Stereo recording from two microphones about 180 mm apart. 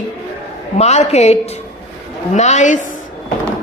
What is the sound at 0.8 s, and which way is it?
A woman's voice, 40° left (ahead or behind).